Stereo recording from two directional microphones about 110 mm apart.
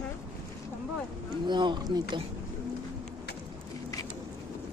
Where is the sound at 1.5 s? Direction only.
45° right (ahead or behind).